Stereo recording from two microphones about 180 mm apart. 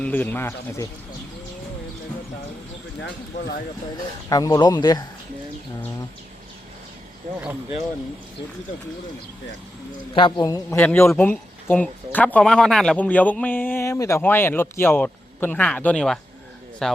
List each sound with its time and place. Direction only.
0.0 s speech: 10° left (ahead or behind)
4.3 s speech: 25° left (ahead or behind)
10.2 s a man's voice: 25° left (ahead or behind); by 17.0 s centre (ahead or behind)